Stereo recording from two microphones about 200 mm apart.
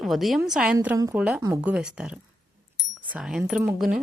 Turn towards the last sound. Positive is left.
turn(degrees=-5)  # may be behind; listen again after turning